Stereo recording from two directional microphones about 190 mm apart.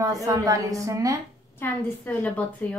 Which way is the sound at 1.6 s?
10° left (ahead or behind).